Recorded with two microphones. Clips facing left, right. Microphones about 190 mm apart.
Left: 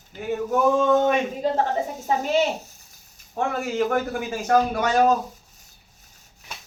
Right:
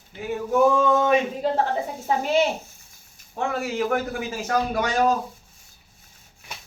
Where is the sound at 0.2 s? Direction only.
45° left (ahead or behind).